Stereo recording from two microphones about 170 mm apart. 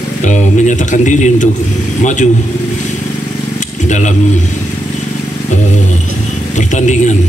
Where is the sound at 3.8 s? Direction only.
45° left (ahead or behind).